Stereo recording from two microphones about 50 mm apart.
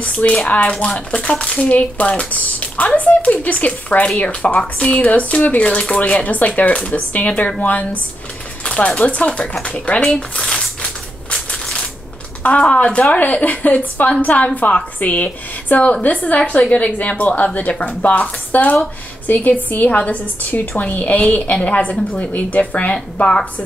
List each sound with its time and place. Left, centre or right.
0.0 s speech: left
8.6 s speech: left
10.1 s crumpling: centre
12.4 s speech: left